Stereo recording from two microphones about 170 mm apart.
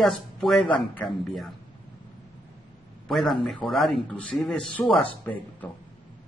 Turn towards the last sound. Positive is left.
turn(degrees=5)  # may be behind; listen again after turning